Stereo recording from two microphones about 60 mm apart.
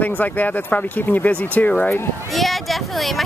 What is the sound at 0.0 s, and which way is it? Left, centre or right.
Speech, left.